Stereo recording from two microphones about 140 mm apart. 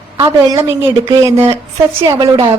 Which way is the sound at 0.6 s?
20° right (ahead or behind).